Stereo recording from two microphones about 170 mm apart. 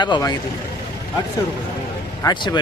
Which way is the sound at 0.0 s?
25° left (ahead or behind).